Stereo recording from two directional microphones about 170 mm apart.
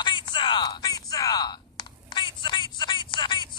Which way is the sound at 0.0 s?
30° left (ahead or behind).